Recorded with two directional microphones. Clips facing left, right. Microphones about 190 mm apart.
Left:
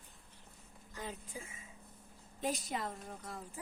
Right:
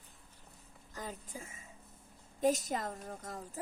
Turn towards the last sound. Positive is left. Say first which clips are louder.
# right 3 dB
turn(degrees=-45)  # may be behind; listen again after turning